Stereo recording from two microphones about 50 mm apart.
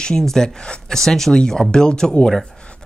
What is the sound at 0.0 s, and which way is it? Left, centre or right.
Speech, centre.